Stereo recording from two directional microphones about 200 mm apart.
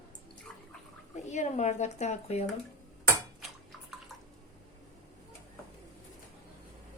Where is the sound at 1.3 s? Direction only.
35° left (ahead or behind).